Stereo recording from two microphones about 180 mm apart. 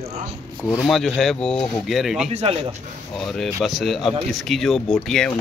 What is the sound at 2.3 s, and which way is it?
Speech, 35° right (ahead or behind).